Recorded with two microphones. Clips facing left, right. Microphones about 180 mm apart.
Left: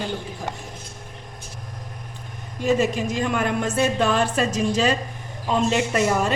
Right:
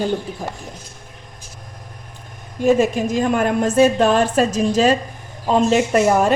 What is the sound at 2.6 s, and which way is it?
A woman's voice, 50° right (ahead or behind).